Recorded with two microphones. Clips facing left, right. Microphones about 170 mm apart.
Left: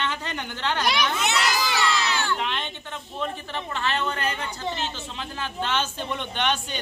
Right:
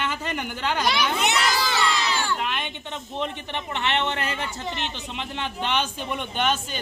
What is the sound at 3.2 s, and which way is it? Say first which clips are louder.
A man's voice: even; 20° right (ahead or behind).